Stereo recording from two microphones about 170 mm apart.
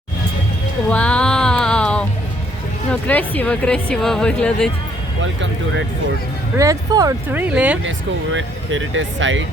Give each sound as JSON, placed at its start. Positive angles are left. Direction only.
{"t": 0.9, "sound": "music", "side_deg": 5}
{"t": 2.9, "sound": "speech", "side_deg": 10}
{"t": 5.2, "sound": "speech", "side_deg": -90}
{"t": 6.6, "sound": "speech", "side_deg": -20}
{"t": 7.5, "sound": "speech", "side_deg": -5}
{"t": 7.9, "sound": "speech", "side_deg": -90}